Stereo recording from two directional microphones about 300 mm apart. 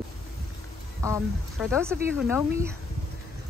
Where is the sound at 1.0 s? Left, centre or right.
Centre.